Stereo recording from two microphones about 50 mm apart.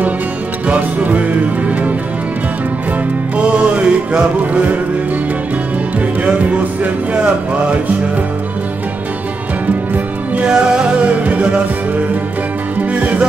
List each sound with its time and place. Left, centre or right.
0.7 s music: right
3.3 s music: right
4.4 s music: right
6.2 s music: right
10.5 s music: centre
12.7 s music: right